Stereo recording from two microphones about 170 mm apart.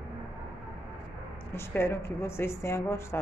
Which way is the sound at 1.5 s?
15° left (ahead or behind).